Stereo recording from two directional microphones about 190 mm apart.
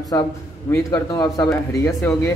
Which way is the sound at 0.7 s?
20° left (ahead or behind).